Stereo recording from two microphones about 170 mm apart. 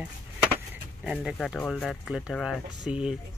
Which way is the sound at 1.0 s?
5° right (ahead or behind).